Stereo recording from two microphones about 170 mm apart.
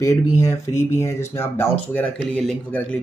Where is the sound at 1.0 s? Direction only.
15° left (ahead or behind).